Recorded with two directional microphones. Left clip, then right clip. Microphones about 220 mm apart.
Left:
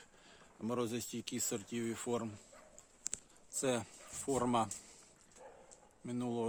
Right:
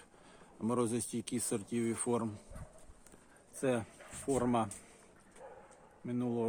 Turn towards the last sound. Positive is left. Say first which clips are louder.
# right 3 dB
turn(degrees=15)  # may be behind; listen again after turning